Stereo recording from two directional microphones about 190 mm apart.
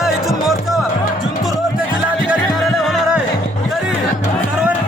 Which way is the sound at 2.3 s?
5° right (ahead or behind).